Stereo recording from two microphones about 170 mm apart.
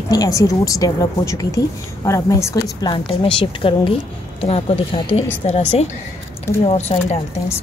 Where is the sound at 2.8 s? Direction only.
30° left (ahead or behind).